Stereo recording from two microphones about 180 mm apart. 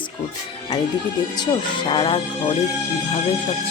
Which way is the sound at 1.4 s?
25° left (ahead or behind).